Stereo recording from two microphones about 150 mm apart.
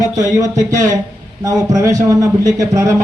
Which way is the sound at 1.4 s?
20° right (ahead or behind).